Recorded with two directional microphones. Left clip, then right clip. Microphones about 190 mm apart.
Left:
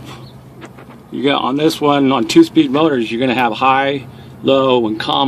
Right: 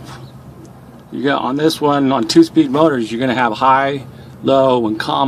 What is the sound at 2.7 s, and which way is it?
Speech, 30° right (ahead or behind).